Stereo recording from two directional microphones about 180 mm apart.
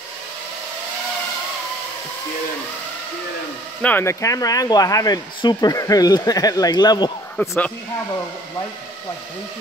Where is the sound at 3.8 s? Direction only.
10° left (ahead or behind).